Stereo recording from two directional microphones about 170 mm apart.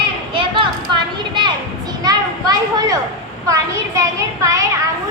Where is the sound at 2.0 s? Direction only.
25° right (ahead or behind).